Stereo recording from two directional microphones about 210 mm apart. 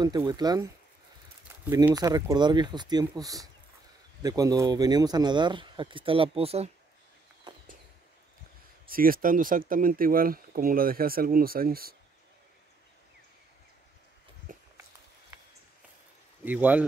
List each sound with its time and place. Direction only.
0.3 s speech: 20° right (ahead or behind)
1.7 s speech: 15° right (ahead or behind)
7.5 s a sound: 20° right (ahead or behind)
8.9 s speech: 45° right (ahead or behind)
14.5 s a sound: 40° right (ahead or behind)
16.4 s speech: 5° right (ahead or behind)